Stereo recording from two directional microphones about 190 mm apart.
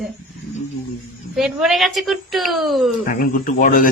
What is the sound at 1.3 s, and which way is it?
A woman's voice, centre (ahead or behind).